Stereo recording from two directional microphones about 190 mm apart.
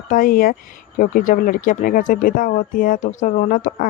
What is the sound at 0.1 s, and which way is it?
Speech, 50° left (ahead or behind).